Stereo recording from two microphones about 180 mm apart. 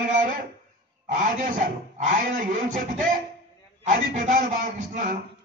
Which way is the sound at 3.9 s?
45° right (ahead or behind).